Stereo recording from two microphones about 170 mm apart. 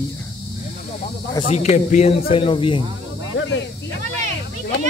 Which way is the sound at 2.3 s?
30° left (ahead or behind).